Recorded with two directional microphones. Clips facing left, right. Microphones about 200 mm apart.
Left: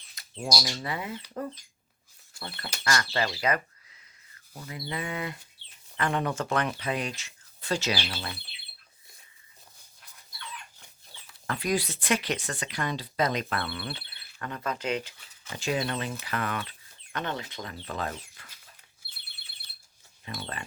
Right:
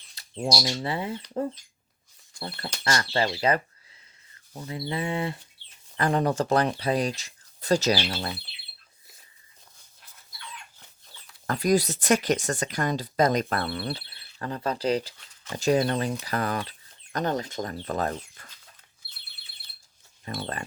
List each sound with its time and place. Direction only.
0.1 s speech: 30° right (ahead or behind)
2.8 s speech: 30° right (ahead or behind)
10.8 s chicken: 5° left (ahead or behind)
11.4 s speech: 40° right (ahead or behind)
20.2 s speech: 40° right (ahead or behind)